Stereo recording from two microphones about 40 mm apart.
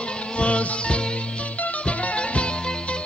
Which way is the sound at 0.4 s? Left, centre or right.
Left.